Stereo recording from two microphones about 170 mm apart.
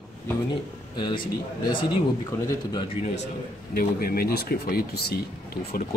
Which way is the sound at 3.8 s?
60° left (ahead or behind).